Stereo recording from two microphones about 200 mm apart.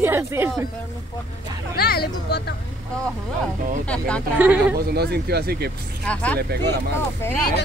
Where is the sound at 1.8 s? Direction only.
50° left (ahead or behind).